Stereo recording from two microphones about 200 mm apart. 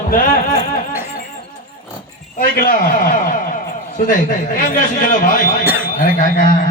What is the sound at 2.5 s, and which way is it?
Speech, 45° left (ahead or behind).